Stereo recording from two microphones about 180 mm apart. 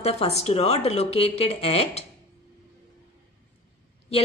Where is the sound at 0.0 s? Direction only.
35° left (ahead or behind).